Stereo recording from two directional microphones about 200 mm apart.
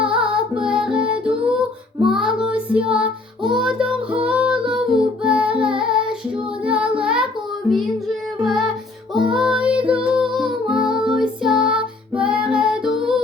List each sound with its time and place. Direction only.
0.0 s music: 5° right (ahead or behind)
8.4 s music: centre (ahead or behind)